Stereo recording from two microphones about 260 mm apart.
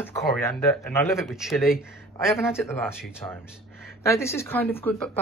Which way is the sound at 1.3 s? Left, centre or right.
Centre.